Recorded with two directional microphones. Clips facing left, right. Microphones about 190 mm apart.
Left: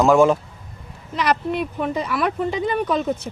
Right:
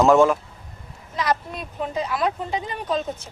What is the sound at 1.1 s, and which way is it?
Speech, 70° left (ahead or behind).